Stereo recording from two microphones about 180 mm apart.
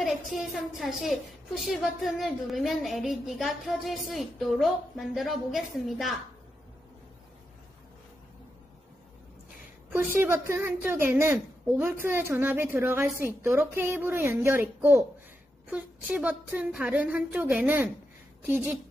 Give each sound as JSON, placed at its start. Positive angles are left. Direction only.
{"t": 0.0, "sound": "a woman's voice", "side_deg": 0}
{"t": 9.9, "sound": "a woman's voice", "side_deg": -10}